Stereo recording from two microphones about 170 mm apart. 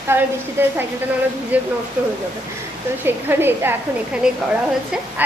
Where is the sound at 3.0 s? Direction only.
10° right (ahead or behind).